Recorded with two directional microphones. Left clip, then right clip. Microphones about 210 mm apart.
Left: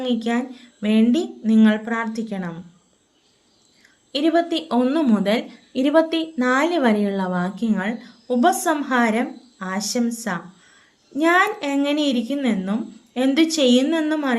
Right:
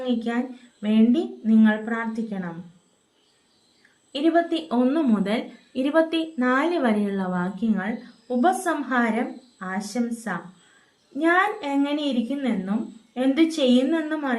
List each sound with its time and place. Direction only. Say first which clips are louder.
0.0 s a woman's voice: left 3 dB; 50° left (ahead or behind)
4.1 s a woman's voice: left 2 dB; 50° left (ahead or behind)